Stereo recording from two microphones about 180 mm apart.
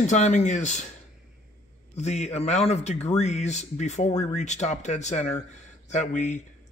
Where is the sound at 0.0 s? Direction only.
40° left (ahead or behind).